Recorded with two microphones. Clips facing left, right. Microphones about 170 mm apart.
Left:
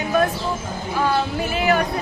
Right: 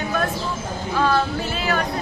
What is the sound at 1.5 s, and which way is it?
Speech, 15° left (ahead or behind).